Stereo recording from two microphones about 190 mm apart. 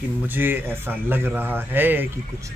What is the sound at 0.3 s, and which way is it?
A man's voice, 10° right (ahead or behind).